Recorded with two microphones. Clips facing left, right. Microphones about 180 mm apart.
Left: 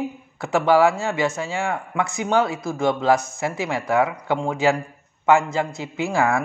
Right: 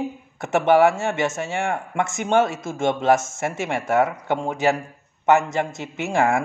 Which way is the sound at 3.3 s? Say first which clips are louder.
Even; 45° right (ahead or behind).